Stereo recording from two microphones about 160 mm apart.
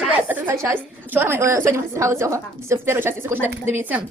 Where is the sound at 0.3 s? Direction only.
15° right (ahead or behind).